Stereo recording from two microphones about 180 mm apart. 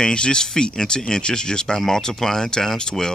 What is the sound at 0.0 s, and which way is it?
Speech, 5° left (ahead or behind).